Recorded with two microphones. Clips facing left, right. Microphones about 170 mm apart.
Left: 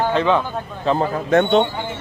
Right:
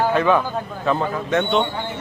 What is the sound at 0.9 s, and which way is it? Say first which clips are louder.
Speech: left 3 dB; 35° left (ahead or behind).